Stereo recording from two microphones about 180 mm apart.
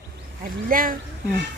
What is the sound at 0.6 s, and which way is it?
Speech, 50° right (ahead or behind).